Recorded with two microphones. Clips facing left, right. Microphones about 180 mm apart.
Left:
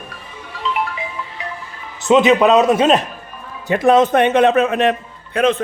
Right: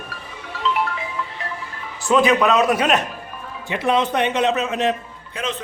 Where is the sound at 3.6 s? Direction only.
45° left (ahead or behind).